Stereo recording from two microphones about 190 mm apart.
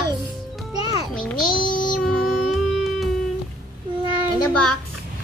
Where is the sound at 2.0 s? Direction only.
Centre (ahead or behind).